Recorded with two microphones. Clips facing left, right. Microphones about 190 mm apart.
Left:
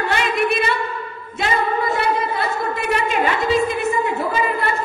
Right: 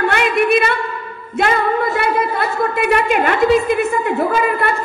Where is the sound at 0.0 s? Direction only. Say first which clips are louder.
Right 4 dB; 55° right (ahead or behind).